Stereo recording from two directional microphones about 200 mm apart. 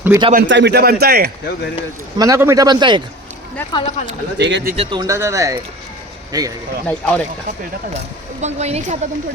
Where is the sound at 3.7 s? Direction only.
30° left (ahead or behind).